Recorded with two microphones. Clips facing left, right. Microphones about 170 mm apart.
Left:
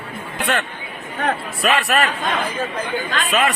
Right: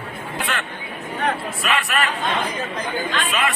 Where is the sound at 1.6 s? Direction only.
35° left (ahead or behind).